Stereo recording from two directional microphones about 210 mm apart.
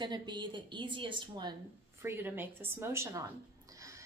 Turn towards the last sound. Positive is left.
turn(degrees=-10)  # may be behind; listen again after turning